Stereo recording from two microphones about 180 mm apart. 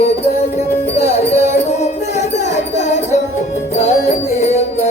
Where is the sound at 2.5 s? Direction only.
40° left (ahead or behind).